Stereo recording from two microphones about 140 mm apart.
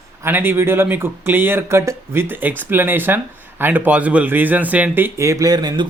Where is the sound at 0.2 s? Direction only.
15° right (ahead or behind).